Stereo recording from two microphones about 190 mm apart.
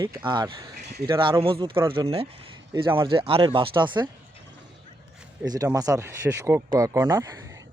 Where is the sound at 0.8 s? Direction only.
60° right (ahead or behind).